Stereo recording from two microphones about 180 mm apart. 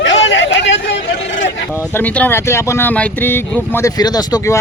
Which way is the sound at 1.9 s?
10° left (ahead or behind).